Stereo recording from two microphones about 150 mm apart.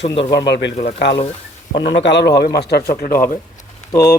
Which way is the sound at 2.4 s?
90° left.